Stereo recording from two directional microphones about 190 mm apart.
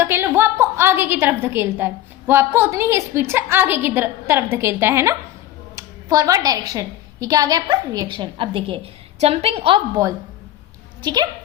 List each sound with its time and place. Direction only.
0.0 s a woman's voice: 10° right (ahead or behind)